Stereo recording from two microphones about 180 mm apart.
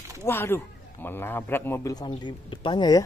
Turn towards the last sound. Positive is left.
turn(degrees=20)  # may be behind; listen again after turning